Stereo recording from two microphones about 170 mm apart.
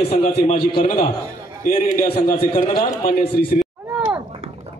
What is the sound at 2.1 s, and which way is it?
Speech, 30° left (ahead or behind).